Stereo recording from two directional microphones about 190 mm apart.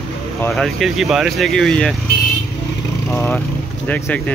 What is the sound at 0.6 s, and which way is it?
Speech, centre (ahead or behind).